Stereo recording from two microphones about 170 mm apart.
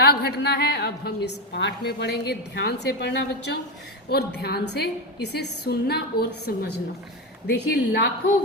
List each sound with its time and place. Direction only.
0.0 s a woman's voice: 75° left (ahead or behind)